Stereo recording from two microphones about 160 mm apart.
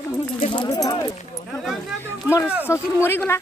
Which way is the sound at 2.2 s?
15° left (ahead or behind).